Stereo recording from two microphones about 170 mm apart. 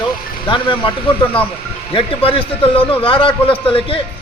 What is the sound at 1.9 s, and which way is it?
A man's voice, 35° left (ahead or behind).